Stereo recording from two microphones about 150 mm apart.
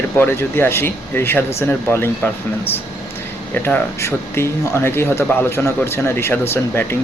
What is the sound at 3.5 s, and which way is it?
Speech, 15° left (ahead or behind).